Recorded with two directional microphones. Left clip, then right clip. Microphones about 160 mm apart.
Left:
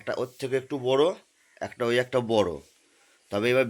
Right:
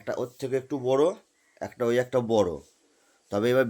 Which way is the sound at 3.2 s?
25° right (ahead or behind).